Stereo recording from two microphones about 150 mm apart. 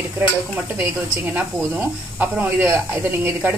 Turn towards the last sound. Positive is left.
turn(degrees=-15)  # may be behind; listen again after turning